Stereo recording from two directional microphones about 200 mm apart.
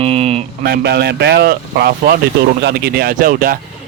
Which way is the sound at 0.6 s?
55° right (ahead or behind).